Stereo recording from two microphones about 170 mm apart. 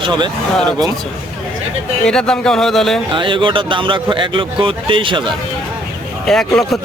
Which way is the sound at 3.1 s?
30° right (ahead or behind).